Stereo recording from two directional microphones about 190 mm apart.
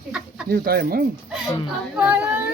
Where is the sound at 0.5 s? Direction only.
55° right (ahead or behind).